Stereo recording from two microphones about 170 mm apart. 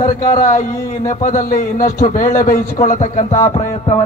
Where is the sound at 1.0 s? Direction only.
50° left (ahead or behind).